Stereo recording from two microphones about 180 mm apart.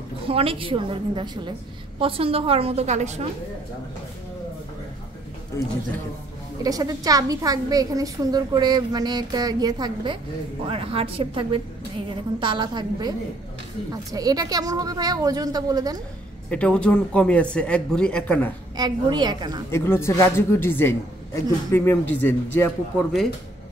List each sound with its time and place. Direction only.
0.3 s a woman's voice: 30° right (ahead or behind)
6.6 s a woman's voice: 20° right (ahead or behind)
14.1 s a woman's voice: 20° right (ahead or behind)
16.4 s a man's voice: 5° left (ahead or behind)
18.8 s a woman's voice: 25° right (ahead or behind)
19.7 s a man's voice: 15° left (ahead or behind)